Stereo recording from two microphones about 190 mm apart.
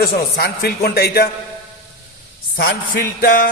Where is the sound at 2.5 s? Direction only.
50° left (ahead or behind).